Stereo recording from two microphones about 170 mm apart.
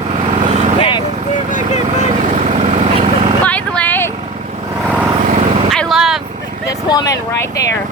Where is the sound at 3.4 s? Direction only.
10° left (ahead or behind).